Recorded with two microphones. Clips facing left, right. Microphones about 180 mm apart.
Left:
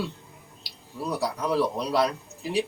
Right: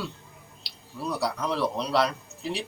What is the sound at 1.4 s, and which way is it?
Speech, 10° left (ahead or behind).